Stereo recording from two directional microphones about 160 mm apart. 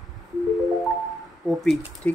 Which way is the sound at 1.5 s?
Centre (ahead or behind).